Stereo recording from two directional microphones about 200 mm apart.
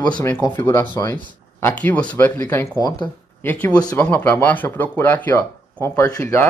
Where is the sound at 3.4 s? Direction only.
10° left (ahead or behind).